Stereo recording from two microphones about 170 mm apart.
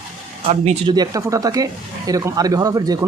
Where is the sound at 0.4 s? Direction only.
40° right (ahead or behind).